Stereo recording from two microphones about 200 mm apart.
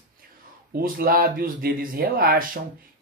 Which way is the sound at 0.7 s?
45° right (ahead or behind).